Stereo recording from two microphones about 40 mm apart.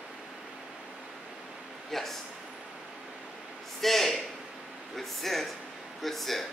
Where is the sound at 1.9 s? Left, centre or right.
Centre.